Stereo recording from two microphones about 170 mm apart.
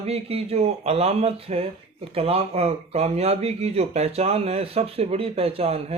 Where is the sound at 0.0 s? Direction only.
35° right (ahead or behind).